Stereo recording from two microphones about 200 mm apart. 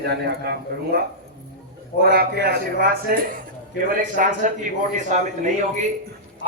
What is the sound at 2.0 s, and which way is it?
A man's voice, 50° right (ahead or behind).